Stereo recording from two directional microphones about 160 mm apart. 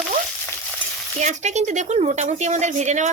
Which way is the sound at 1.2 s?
45° right (ahead or behind).